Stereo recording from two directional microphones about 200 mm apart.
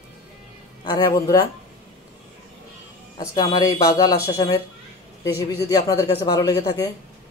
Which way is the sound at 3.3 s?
20° left (ahead or behind).